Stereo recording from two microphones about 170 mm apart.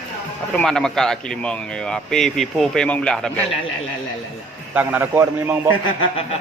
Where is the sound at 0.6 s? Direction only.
5° left (ahead or behind).